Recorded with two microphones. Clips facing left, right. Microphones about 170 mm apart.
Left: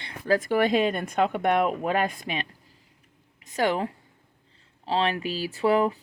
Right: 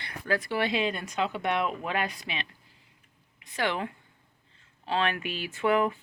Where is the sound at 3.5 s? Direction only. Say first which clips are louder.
Left 5 dB; 40° left (ahead or behind).